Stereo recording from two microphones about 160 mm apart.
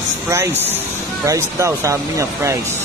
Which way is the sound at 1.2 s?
20° right (ahead or behind).